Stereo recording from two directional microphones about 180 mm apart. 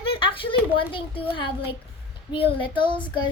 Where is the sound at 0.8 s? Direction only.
30° left (ahead or behind).